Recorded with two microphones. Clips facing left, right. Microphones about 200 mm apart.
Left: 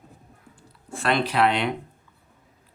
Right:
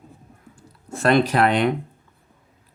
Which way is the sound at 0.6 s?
45° right (ahead or behind).